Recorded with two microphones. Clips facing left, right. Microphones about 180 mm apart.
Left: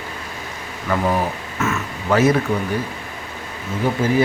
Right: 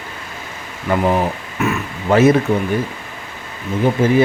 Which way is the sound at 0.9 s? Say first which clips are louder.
Right 3 dB; 20° right (ahead or behind).